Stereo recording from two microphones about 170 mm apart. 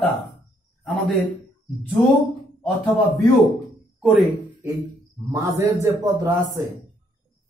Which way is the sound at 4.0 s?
5° right (ahead or behind).